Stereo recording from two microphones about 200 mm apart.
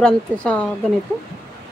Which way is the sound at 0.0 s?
5° left (ahead or behind).